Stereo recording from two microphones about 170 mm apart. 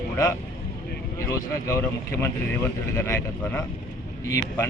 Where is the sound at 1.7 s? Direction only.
15° left (ahead or behind).